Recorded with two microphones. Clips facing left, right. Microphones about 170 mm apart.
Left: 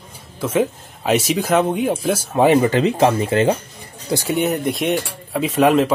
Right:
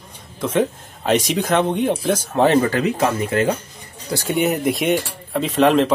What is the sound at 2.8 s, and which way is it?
Speech, 25° left (ahead or behind).